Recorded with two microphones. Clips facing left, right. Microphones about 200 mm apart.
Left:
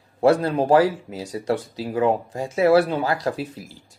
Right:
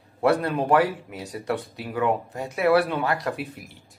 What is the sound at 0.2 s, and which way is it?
Speech, 30° left (ahead or behind).